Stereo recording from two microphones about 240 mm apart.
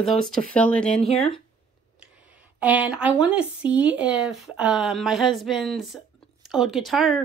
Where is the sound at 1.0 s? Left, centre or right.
Left.